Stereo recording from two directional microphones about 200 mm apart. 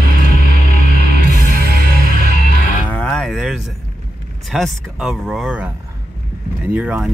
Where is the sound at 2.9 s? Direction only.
5° left (ahead or behind).